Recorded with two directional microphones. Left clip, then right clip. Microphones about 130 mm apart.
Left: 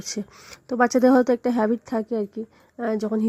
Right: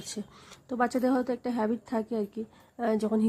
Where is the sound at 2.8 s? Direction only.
25° left (ahead or behind).